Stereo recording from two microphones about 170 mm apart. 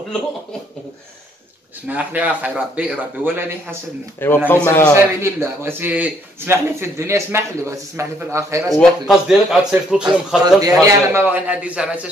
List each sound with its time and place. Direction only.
1.9 s speech: 10° right (ahead or behind)
4.5 s a man's voice: 10° left (ahead or behind)
4.9 s speech: 15° right (ahead or behind)
8.7 s speech: centre (ahead or behind)
10.4 s speech: 20° right (ahead or behind)